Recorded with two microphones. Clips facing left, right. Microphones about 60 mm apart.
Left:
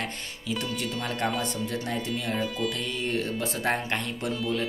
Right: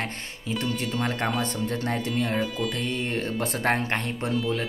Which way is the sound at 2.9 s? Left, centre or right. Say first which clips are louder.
Right 1 dB; right.